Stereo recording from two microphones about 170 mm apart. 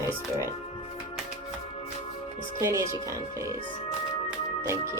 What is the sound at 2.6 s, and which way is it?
Speech, 15° right (ahead or behind).